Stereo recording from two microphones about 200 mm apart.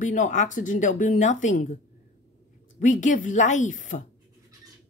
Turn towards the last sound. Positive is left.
turn(degrees=40)  # may be behind; listen again after turning